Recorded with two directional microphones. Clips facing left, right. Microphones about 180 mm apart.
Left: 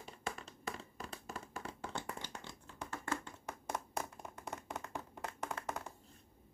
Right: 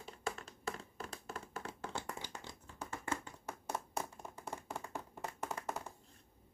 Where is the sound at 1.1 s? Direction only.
Centre (ahead or behind).